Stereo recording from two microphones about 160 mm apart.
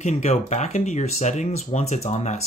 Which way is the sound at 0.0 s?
45° left (ahead or behind).